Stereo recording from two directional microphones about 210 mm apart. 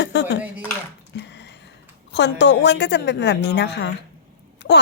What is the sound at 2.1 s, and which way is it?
Speech, 55° left (ahead or behind).